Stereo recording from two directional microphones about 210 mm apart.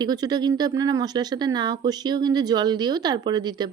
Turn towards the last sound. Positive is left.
turn(degrees=-20)  # may be behind; listen again after turning